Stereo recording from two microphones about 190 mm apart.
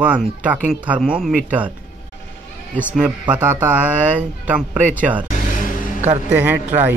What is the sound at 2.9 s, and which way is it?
Speech, 5° right (ahead or behind).